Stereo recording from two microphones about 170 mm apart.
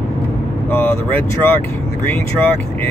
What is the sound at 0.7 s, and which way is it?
Speech, 10° left (ahead or behind).